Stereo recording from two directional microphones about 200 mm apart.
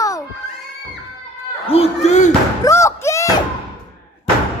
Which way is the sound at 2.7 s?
15° left (ahead or behind).